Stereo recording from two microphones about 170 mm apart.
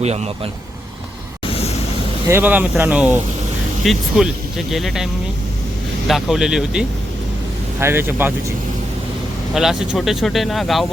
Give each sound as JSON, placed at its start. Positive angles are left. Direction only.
{"t": 0.0, "sound": "speech", "side_deg": -40}
{"t": 1.5, "sound": "vehicle", "side_deg": 35}
{"t": 2.2, "sound": "speech", "side_deg": -15}
{"t": 6.1, "sound": "speech", "side_deg": 0}
{"t": 7.8, "sound": "speech", "side_deg": -15}
{"t": 9.6, "sound": "speech", "side_deg": 0}